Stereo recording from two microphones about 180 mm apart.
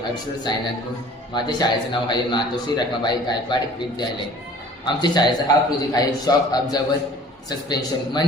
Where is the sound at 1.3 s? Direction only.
25° left (ahead or behind).